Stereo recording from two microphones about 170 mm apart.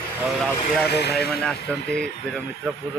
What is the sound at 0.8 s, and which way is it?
Speech, 75° left (ahead or behind).